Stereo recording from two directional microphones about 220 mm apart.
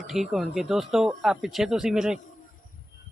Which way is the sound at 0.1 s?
Centre (ahead or behind).